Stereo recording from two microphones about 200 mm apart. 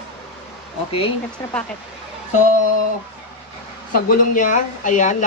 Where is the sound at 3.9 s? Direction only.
45° left (ahead or behind).